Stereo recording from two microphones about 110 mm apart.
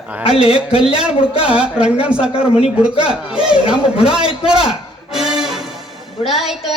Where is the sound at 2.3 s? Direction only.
60° left (ahead or behind).